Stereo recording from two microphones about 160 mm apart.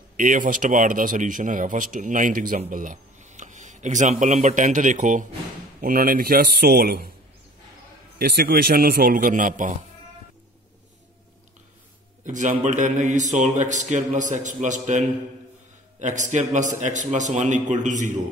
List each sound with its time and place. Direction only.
0.2 s speech: 55° right (ahead or behind)
5.8 s a man's voice: 60° right (ahead or behind)
8.2 s a man's voice: 75° right (ahead or behind); by 9.8 s 55° right (ahead or behind)
12.3 s speech: 50° right (ahead or behind)